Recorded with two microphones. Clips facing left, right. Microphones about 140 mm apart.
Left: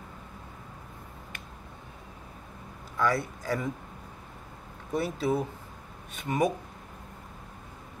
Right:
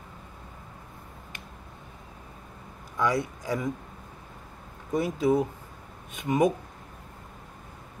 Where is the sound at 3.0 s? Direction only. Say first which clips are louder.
Right 1 dB; 20° right (ahead or behind).